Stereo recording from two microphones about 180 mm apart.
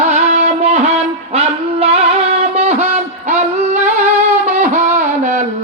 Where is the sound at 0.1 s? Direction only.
40° right (ahead or behind).